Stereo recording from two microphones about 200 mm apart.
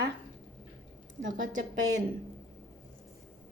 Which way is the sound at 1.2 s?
70° right (ahead or behind).